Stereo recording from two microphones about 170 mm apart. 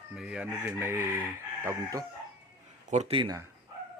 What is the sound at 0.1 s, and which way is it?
Chicken, 5° right (ahead or behind).